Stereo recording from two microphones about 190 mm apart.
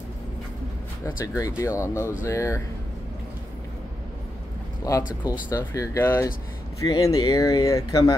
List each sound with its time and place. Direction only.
1.0 s speech: 15° left (ahead or behind)
4.9 s speech: 20° left (ahead or behind)